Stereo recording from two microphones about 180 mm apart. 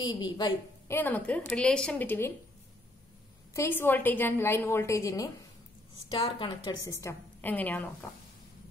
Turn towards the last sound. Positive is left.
turn(degrees=10)  # may be behind; listen again after turning